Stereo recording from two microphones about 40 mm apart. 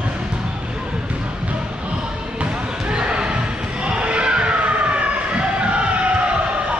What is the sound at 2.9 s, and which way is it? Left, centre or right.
Horse, right.